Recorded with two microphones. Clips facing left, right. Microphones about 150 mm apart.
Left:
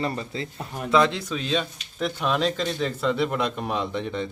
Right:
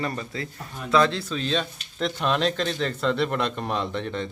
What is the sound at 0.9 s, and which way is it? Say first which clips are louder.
Speech: even; 15° left (ahead or behind).